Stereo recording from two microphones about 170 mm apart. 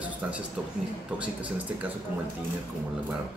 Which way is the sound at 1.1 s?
10° right (ahead or behind).